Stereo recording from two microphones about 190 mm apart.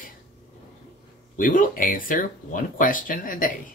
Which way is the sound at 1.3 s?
45° left (ahead or behind).